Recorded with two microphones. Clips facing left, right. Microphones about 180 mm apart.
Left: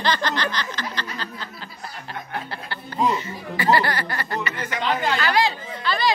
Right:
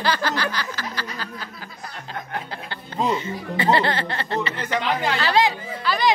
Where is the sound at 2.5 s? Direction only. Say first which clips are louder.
Left 1 dB; 20° right (ahead or behind).